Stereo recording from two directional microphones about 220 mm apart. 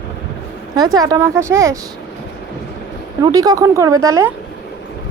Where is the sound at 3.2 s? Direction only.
15° right (ahead or behind).